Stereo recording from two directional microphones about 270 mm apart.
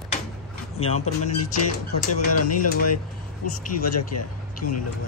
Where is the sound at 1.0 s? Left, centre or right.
Left.